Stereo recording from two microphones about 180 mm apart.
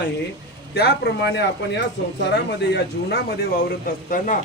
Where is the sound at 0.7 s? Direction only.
65° left (ahead or behind).